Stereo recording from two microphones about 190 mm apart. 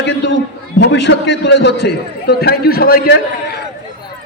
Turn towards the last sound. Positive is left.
turn(degrees=55)  # may be behind; listen again after turning